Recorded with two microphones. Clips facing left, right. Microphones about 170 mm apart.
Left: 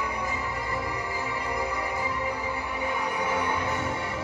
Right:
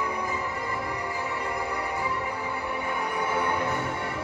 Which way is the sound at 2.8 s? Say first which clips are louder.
Left 2 dB; 55° right (ahead or behind).